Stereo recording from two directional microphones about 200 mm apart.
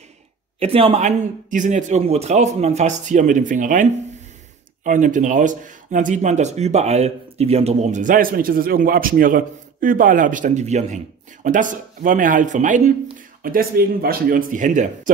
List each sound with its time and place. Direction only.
0.6 s speech: 30° right (ahead or behind)